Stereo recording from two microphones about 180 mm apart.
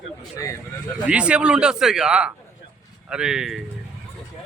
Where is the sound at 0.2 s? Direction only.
15° left (ahead or behind).